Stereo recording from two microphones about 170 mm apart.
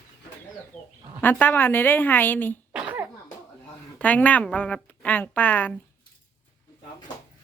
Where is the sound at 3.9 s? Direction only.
10° left (ahead or behind).